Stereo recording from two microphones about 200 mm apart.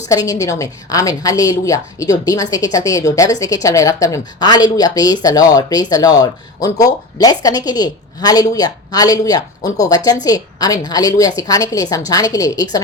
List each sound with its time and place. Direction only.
0.1 s a woman's voice: 15° left (ahead or behind)